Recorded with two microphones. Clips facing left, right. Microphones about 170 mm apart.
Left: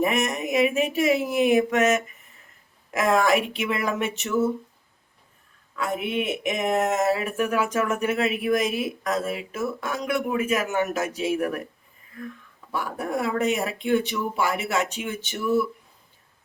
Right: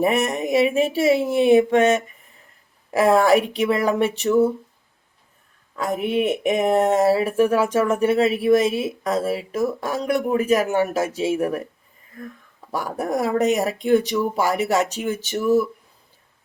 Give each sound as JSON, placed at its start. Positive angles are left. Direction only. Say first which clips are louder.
{"t": 0.0, "sound": "speech", "louder": "right 4 dB", "side_deg": -35}
{"t": 5.7, "sound": "speech", "louder": "right 5 dB", "side_deg": -40}
{"t": 12.2, "sound": "speech", "louder": "even", "side_deg": -40}